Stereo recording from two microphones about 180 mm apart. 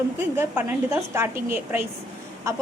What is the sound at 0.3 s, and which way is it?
Speech, 10° right (ahead or behind).